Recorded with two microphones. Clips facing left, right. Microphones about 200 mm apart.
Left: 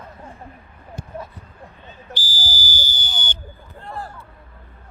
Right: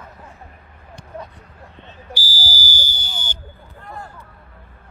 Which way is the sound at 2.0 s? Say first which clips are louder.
Right 2 dB; 10° right (ahead or behind).